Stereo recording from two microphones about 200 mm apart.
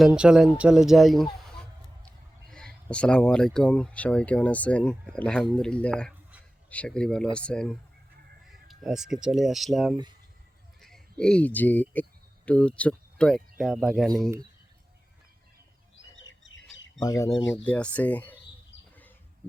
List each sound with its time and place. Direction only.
0.0 s speech: 5° right (ahead or behind)
8.6 s a sound: centre (ahead or behind)
9.2 s speech: centre (ahead or behind)
16.0 s bird: 70° left (ahead or behind)
17.0 s speech: 15° left (ahead or behind)